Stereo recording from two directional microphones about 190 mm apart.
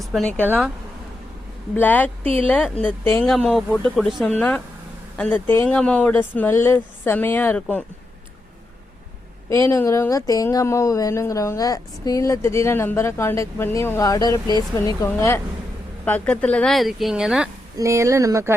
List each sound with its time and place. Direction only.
0.0 s speech: centre (ahead or behind)
0.4 s speech: 10° right (ahead or behind)
1.7 s speech: 10° left (ahead or behind)
9.5 s speech: 15° left (ahead or behind); by 17.5 s 5° right (ahead or behind)
17.7 s speech: 15° right (ahead or behind)